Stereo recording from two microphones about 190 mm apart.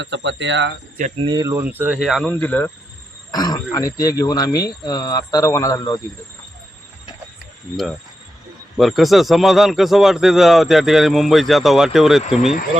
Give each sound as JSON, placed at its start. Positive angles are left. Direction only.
{"t": 0.0, "sound": "speech", "side_deg": -70}
{"t": 1.2, "sound": "speech", "side_deg": -20}
{"t": 8.8, "sound": "speech", "side_deg": 0}